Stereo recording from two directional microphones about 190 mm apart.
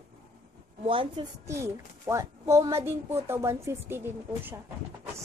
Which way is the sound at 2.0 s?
15° right (ahead or behind).